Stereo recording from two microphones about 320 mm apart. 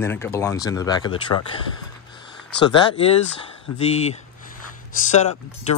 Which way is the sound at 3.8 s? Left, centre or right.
Centre.